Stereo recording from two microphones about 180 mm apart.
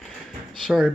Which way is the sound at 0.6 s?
Centre (ahead or behind).